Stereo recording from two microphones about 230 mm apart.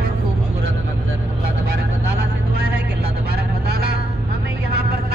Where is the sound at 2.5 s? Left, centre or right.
Right.